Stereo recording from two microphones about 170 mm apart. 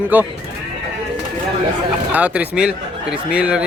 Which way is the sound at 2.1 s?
5° right (ahead or behind).